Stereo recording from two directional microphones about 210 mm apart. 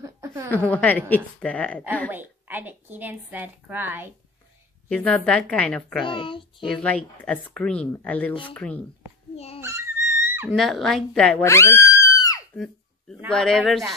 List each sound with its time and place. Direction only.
0.0 s a sound: 15° right (ahead or behind)
0.5 s a woman's voice: 10° left (ahead or behind)
2.0 s a woman's voice: 10° right (ahead or behind)
4.8 s speech: 5° left (ahead or behind)
6.0 s a child's voice: 25° left (ahead or behind)
6.6 s speech: 5° left (ahead or behind)
9.6 s a sound: 10° right (ahead or behind)
10.5 s speech: centre (ahead or behind)
12.5 s a sound: 5° left (ahead or behind)
13.3 s speech: centre (ahead or behind)